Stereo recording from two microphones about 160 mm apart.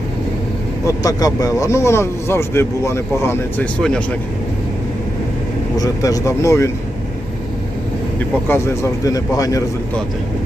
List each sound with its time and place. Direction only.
0.9 s speech: 20° left (ahead or behind); by 4.0 s 5° left (ahead or behind)
5.7 s speech: 20° left (ahead or behind)
8.4 s speech: 15° left (ahead or behind)